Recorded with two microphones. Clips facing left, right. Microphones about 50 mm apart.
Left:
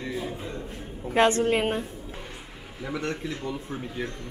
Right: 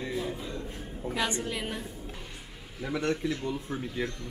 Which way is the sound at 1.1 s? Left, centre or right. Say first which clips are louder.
Left 11 dB; left.